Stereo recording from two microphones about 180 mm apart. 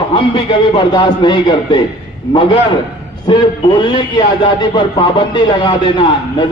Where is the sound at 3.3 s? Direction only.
25° left (ahead or behind).